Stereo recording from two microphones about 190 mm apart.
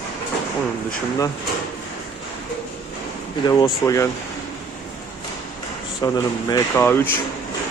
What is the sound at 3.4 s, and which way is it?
Speech, 20° left (ahead or behind).